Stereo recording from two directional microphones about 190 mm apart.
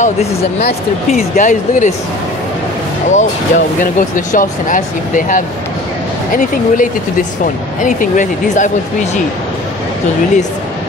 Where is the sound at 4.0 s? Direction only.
45° left (ahead or behind).